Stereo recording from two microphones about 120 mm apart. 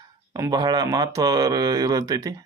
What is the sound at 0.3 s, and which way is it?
Speech, 30° right (ahead or behind).